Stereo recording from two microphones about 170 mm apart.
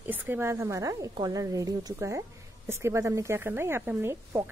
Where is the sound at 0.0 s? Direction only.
10° right (ahead or behind).